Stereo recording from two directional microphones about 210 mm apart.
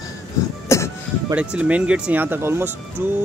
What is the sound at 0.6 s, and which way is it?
Music, 15° left (ahead or behind).